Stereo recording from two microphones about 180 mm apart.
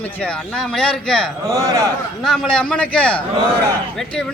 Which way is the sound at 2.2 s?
5° left (ahead or behind).